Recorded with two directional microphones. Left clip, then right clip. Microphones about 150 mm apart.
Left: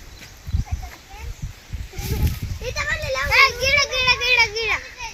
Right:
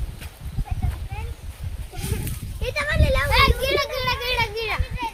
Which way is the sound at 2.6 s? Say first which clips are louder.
Right 1 dB; 65° left (ahead or behind).